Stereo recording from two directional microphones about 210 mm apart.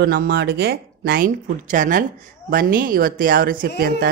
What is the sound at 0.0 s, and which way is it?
Speech, 50° right (ahead or behind).